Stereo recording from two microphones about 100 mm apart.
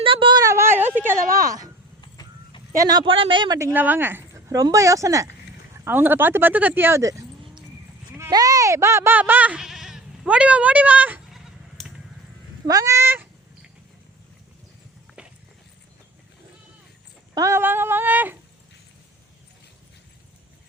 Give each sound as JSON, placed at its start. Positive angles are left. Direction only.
{"t": 0.0, "sound": "a sound", "side_deg": -60}
{"t": 0.3, "sound": "a sound", "side_deg": -30}
{"t": 1.4, "sound": "a sound", "side_deg": -35}
{"t": 2.0, "sound": "vehicle", "side_deg": 50}
{"t": 2.7, "sound": "speech", "side_deg": -40}
{"t": 3.0, "sound": "speech", "side_deg": -60}
{"t": 3.6, "sound": "speech", "side_deg": -20}
{"t": 8.3, "sound": "speech", "side_deg": -35}
{"t": 9.1, "sound": "speech", "side_deg": -15}
{"t": 11.3, "sound": "goat", "side_deg": 0}
{"t": 12.6, "sound": "speech", "side_deg": -35}
{"t": 17.3, "sound": "speech", "side_deg": -30}